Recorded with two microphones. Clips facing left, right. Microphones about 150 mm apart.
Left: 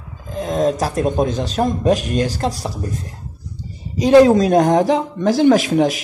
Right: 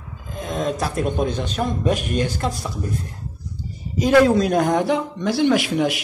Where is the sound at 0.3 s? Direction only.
40° left (ahead or behind).